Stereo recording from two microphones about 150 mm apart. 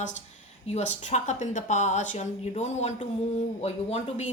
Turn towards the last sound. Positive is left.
turn(degrees=45)  # may be behind; listen again after turning